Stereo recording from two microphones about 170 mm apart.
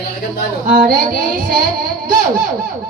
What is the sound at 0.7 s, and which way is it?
Speech, 55° right (ahead or behind).